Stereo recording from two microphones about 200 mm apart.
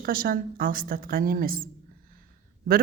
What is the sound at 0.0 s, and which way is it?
A woman's voice, 45° right (ahead or behind).